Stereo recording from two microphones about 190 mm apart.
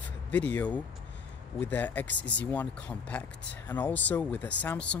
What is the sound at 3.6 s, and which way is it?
Speech, 10° left (ahead or behind).